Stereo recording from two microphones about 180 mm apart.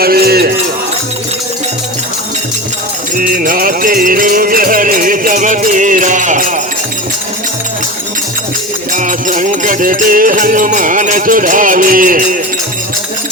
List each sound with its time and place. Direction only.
0.0 s a sound: 60° right (ahead or behind)
3.2 s music: 50° right (ahead or behind)
9.0 s music: 45° right (ahead or behind)